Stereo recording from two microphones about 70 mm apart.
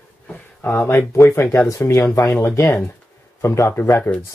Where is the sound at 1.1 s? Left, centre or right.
Left.